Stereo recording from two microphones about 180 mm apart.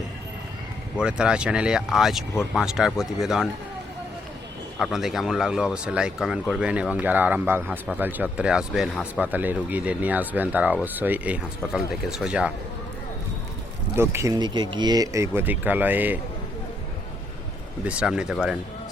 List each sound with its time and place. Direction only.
0.9 s speech: 5° right (ahead or behind)
2.3 s speech: 15° left (ahead or behind)
2.6 s speech: 5° right (ahead or behind)
4.8 s speech: centre (ahead or behind)
13.9 s speech: 15° right (ahead or behind)
17.8 s speech: 5° right (ahead or behind)